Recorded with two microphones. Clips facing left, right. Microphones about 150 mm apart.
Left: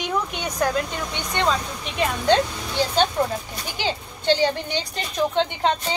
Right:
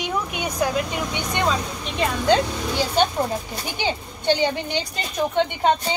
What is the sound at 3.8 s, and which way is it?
Speech, 15° right (ahead or behind).